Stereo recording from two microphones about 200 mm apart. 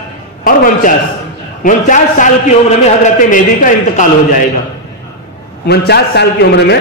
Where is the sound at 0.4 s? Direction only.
45° left (ahead or behind).